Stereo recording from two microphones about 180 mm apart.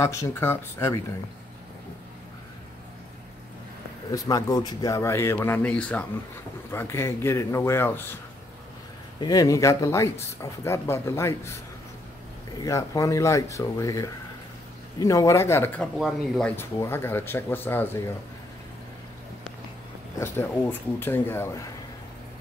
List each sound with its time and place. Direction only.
0.0 s speech: 15° left (ahead or behind)
4.1 s speech: 20° left (ahead or behind)
9.2 s speech: 20° left (ahead or behind)
12.6 s speech: 15° left (ahead or behind)
16.5 s speech: 15° left (ahead or behind)
20.2 s speech: 10° left (ahead or behind)